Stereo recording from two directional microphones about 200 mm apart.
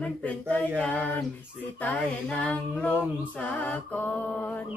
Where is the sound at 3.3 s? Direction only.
5° left (ahead or behind).